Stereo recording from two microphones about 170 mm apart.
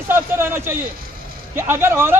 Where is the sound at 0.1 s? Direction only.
15° right (ahead or behind).